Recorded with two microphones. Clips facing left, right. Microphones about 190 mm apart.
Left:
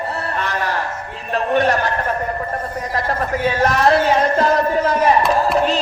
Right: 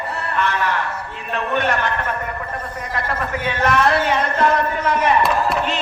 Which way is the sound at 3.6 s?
35° left (ahead or behind).